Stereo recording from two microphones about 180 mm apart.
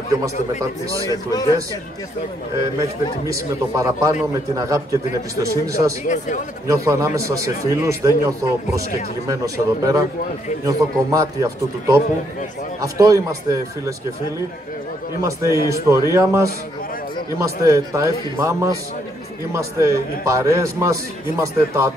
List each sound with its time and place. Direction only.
0.1 s speech: 20° right (ahead or behind)
1.1 s a man's voice: 20° left (ahead or behind)
2.8 s a man's voice: 20° right (ahead or behind)
6.0 s a man's voice: 45° left (ahead or behind)
6.7 s a man's voice: 15° right (ahead or behind)
15.2 s a man's voice: 15° right (ahead or behind)